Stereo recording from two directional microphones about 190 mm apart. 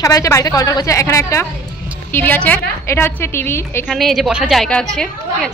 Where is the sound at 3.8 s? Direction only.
Centre (ahead or behind).